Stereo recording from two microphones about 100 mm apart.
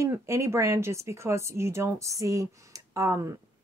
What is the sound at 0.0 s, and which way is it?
A woman's voice, 30° right (ahead or behind).